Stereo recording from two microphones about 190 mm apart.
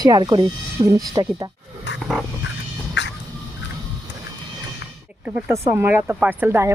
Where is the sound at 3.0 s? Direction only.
70° left (ahead or behind).